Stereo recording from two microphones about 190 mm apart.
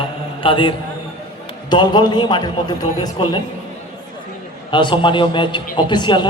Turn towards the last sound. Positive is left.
turn(degrees=25)  # may be behind; listen again after turning